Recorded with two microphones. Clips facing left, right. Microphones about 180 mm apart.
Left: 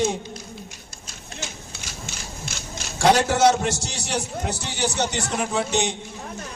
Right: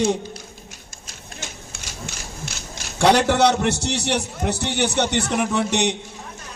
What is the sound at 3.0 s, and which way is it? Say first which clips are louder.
A man's voice: right 1 dB; 65° right (ahead or behind).